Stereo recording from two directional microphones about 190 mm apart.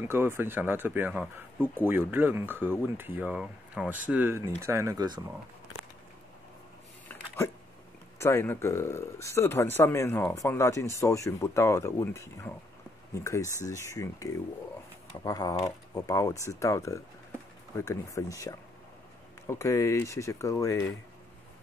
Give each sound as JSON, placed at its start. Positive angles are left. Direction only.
{"t": 0.0, "sound": "speech", "side_deg": -10}
{"t": 8.2, "sound": "speech", "side_deg": 15}